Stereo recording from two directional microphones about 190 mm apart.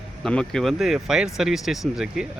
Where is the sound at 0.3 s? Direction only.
5° left (ahead or behind).